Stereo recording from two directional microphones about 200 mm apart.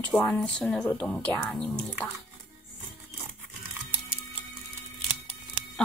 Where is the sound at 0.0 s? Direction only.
5° left (ahead or behind).